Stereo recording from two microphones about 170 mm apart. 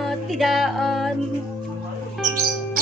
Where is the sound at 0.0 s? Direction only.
Centre (ahead or behind).